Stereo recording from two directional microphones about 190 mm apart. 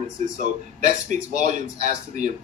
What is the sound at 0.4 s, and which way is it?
Speech, 40° right (ahead or behind).